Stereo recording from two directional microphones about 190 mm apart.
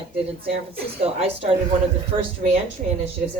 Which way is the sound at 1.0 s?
35° right (ahead or behind).